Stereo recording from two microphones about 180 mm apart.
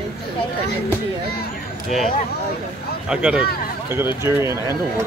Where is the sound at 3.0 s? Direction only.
5° right (ahead or behind).